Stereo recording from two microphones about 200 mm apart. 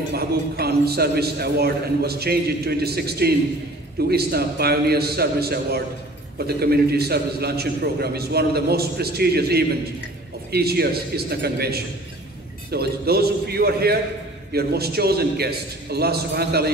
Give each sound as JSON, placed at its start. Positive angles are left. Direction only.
{"t": 0.1, "sound": "a man's voice", "side_deg": -55}